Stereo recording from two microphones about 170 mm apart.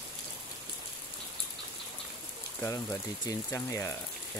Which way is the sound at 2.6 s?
15° left (ahead or behind).